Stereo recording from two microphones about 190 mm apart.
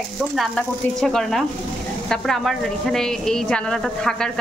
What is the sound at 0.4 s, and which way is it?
A woman's voice, centre (ahead or behind).